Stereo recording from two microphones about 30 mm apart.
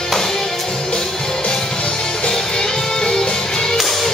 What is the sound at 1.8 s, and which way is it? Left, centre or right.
Music, left.